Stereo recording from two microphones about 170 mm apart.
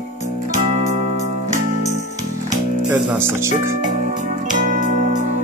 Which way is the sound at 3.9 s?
50° right (ahead or behind).